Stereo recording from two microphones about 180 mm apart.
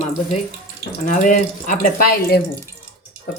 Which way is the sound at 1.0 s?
45° left (ahead or behind).